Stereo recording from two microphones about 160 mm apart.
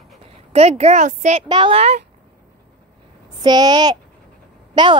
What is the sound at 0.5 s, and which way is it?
Speech, 40° right (ahead or behind).